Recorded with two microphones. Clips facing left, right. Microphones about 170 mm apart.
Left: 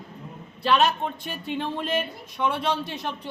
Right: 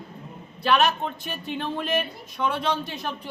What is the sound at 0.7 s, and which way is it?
Speech, centre (ahead or behind).